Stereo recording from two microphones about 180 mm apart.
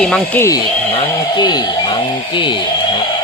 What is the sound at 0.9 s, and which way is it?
Speech, 30° left (ahead or behind).